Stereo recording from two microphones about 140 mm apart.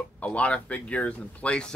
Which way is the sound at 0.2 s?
10° left (ahead or behind).